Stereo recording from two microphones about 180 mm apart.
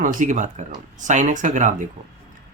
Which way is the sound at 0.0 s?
45° right (ahead or behind).